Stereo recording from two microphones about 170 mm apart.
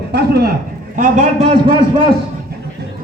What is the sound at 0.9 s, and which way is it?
Speech, 50° right (ahead or behind).